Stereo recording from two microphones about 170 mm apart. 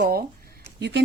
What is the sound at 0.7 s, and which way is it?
Speech, 90° right.